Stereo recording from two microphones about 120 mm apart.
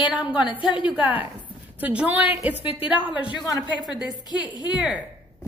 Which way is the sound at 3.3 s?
35° left (ahead or behind).